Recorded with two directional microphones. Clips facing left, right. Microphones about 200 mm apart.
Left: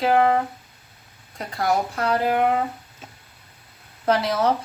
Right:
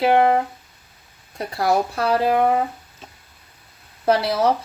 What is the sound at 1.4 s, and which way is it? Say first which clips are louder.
Speech: right 3 dB; 30° right (ahead or behind).